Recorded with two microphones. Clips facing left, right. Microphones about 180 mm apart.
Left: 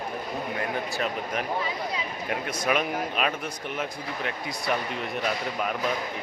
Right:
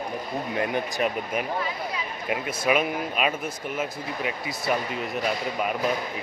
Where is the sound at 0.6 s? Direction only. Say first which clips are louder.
Right 5 dB; 15° right (ahead or behind).